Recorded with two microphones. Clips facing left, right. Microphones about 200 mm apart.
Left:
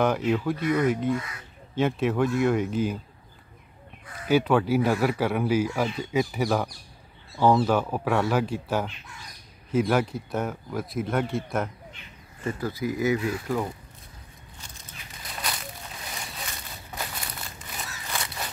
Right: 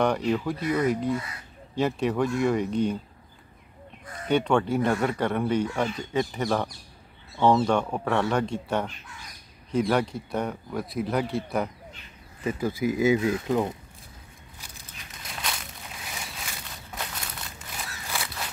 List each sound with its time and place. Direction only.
0.0 s speech: centre (ahead or behind)
4.3 s speech: 5° left (ahead or behind)
12.4 s speech: 15° right (ahead or behind)
15.2 s a sound: centre (ahead or behind)